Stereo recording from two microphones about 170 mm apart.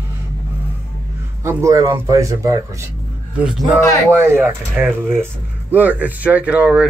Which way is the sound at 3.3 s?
5° right (ahead or behind).